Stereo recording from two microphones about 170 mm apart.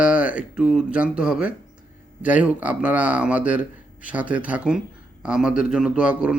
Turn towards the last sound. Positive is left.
turn(degrees=-5)  # may be behind; listen again after turning